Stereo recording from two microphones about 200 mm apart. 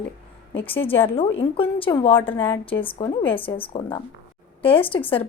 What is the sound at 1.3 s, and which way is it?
A woman's voice, 25° left (ahead or behind).